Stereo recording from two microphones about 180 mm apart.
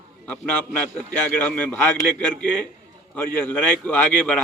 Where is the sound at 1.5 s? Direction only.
10° left (ahead or behind).